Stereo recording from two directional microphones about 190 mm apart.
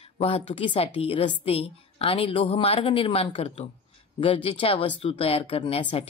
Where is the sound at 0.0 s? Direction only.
30° left (ahead or behind).